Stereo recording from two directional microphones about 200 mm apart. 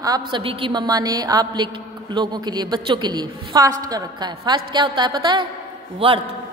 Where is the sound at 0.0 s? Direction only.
20° right (ahead or behind).